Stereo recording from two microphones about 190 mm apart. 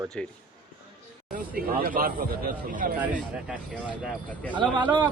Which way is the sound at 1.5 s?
50° right (ahead or behind).